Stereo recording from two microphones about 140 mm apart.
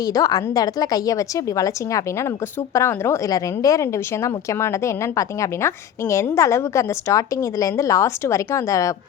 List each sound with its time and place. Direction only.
0.0 s a woman's voice: 25° left (ahead or behind)